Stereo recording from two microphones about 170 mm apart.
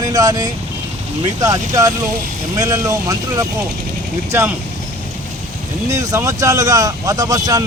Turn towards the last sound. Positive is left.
turn(degrees=-20)  # may be behind; listen again after turning